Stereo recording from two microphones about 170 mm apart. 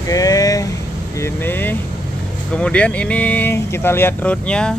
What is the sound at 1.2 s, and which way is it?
Speech, 15° left (ahead or behind).